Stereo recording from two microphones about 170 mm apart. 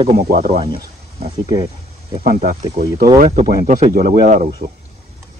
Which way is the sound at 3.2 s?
60° right (ahead or behind).